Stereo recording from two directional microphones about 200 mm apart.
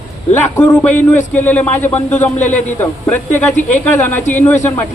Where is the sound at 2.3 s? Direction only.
35° left (ahead or behind).